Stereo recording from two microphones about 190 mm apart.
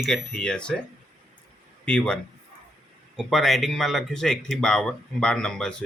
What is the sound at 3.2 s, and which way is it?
Speech, centre (ahead or behind).